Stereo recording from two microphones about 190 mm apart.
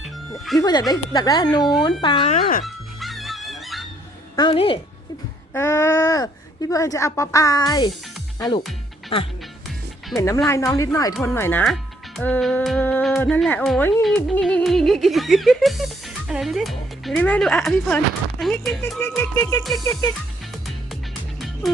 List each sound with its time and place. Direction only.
0.0 s music: centre (ahead or behind)
0.6 s speech: 20° left (ahead or behind)
2.3 s speech: 45° left (ahead or behind)
2.6 s music: centre (ahead or behind)
4.4 s speech: 25° left (ahead or behind)
5.5 s speech: 15° left (ahead or behind)
10.2 s speech: 15° left (ahead or behind)
14.3 s music: 5° left (ahead or behind)
20.7 s music: centre (ahead or behind)